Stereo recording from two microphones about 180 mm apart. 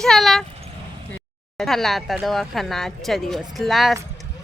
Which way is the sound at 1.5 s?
Centre (ahead or behind).